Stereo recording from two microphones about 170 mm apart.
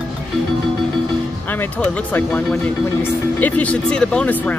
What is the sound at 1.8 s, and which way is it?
Speech, 10° left (ahead or behind).